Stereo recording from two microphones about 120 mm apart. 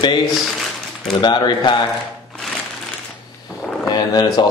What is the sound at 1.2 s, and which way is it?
Speech, 40° left (ahead or behind).